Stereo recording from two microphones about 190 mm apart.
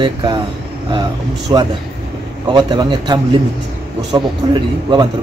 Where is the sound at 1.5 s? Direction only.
25° right (ahead or behind).